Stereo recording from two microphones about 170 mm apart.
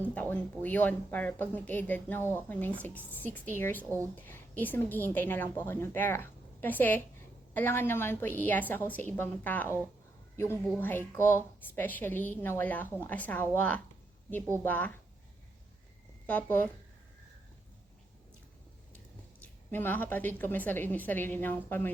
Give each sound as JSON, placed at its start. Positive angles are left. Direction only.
{"t": 0.0, "sound": "a woman's voice", "side_deg": 10}
{"t": 3.8, "sound": "speech", "side_deg": -15}
{"t": 4.1, "sound": "a woman's voice", "side_deg": 10}
{"t": 16.2, "sound": "speech", "side_deg": 10}
{"t": 19.4, "sound": "a woman's voice", "side_deg": 10}